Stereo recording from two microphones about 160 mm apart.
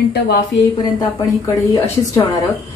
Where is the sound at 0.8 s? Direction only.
25° left (ahead or behind).